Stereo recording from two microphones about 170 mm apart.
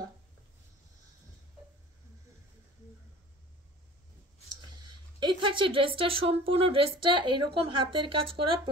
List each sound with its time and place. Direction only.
4.8 s speech: 25° right (ahead or behind)